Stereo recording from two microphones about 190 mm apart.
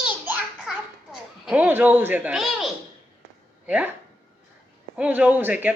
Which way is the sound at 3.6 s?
5° right (ahead or behind).